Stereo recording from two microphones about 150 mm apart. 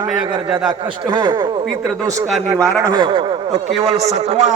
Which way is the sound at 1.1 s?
25° right (ahead or behind).